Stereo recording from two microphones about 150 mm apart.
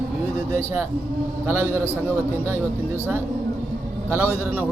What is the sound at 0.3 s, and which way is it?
Speech, 15° right (ahead or behind).